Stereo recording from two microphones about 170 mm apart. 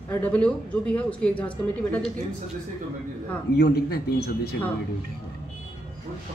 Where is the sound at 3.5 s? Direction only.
75° left (ahead or behind).